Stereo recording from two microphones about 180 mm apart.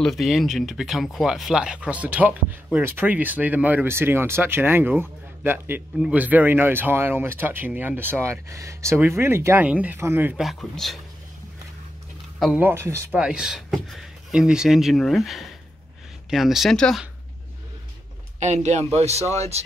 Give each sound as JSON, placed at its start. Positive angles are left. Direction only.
{"t": 0.0, "sound": "speech", "side_deg": 0}
{"t": 12.4, "sound": "speech", "side_deg": 0}
{"t": 12.6, "sound": "speech", "side_deg": -15}
{"t": 18.4, "sound": "speech", "side_deg": -40}